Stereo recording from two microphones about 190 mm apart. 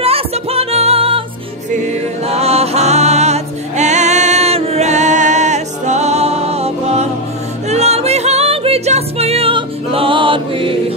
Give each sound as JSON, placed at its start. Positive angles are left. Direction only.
{"t": 0.0, "sound": "music", "side_deg": -30}
{"t": 2.2, "sound": "music", "side_deg": -35}